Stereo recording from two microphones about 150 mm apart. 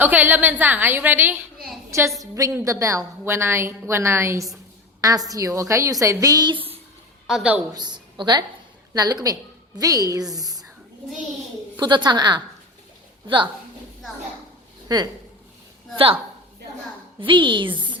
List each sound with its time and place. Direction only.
0.0 s a woman's voice: 10° right (ahead or behind); by 6.7 s 35° right (ahead or behind)
7.3 s a woman's voice: 5° right (ahead or behind)
7.7 s a woman's voice: 30° right (ahead or behind)
11.8 s a woman's voice: 30° right (ahead or behind)
14.8 s speech: 25° right (ahead or behind)
17.2 s a woman's voice: 35° right (ahead or behind)